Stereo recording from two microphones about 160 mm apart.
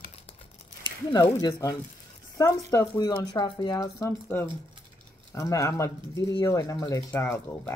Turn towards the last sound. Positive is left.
turn(degrees=15)  # may be behind; listen again after turning